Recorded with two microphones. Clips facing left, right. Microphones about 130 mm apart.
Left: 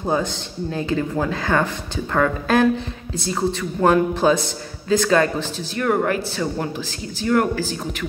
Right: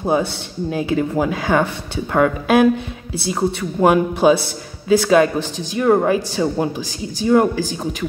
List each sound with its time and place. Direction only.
0.0 s speech: 10° right (ahead or behind)